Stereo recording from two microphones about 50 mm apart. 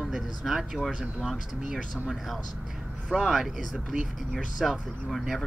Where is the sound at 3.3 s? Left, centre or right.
Centre.